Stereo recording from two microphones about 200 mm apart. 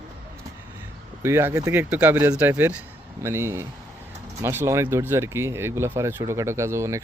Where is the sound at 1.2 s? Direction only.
10° right (ahead or behind).